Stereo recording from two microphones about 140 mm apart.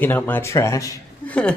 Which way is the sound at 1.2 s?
10° left (ahead or behind).